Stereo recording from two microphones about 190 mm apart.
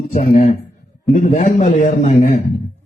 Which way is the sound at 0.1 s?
35° left (ahead or behind).